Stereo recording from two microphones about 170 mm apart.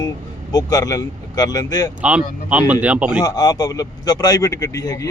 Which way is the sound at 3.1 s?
25° left (ahead or behind).